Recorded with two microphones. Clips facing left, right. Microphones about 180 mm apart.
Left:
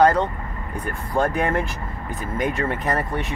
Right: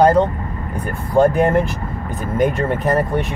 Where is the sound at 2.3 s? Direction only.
5° right (ahead or behind).